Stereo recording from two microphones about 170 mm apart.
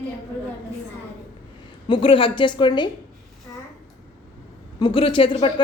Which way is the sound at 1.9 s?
30° left (ahead or behind).